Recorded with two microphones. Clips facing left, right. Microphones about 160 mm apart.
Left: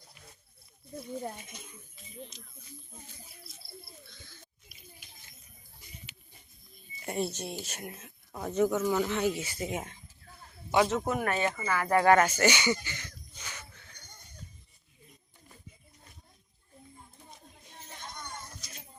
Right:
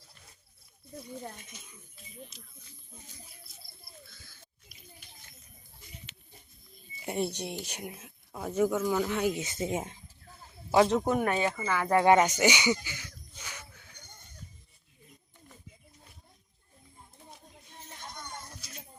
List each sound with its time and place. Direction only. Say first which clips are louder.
4.1 s a sound: left 3 dB; 5° right (ahead or behind)
7.0 s speech: right 1 dB; 15° right (ahead or behind)
8.8 s speech: even; 5° left (ahead or behind)
9.0 s speech: even; 10° right (ahead or behind); by 9.9 s 25° right (ahead or behind)
10.8 s speech: right 3 dB; centre (ahead or behind)
11.3 s speech: right 1 dB; 10° right (ahead or behind)
11.9 s speech: right 1 dB; 20° right (ahead or behind)
12.7 s a sound: even; 10° right (ahead or behind)